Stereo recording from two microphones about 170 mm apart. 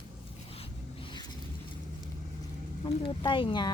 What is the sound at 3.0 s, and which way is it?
Speech, 30° left (ahead or behind).